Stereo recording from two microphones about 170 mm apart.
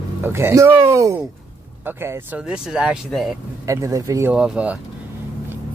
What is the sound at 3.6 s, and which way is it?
Speech, 15° right (ahead or behind).